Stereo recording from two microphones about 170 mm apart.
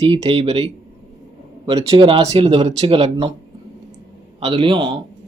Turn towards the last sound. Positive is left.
turn(degrees=-30)  # may be behind; listen again after turning